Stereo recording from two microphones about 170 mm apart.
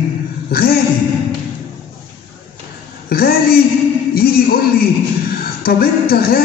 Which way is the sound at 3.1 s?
65° left (ahead or behind).